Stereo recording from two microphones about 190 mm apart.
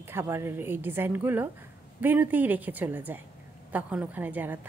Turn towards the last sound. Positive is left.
turn(degrees=-10)  # may be behind; listen again after turning